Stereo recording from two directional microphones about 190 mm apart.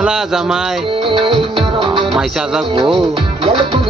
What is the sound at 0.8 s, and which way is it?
Music, 30° right (ahead or behind).